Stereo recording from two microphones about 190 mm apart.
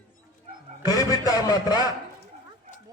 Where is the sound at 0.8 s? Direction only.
20° left (ahead or behind).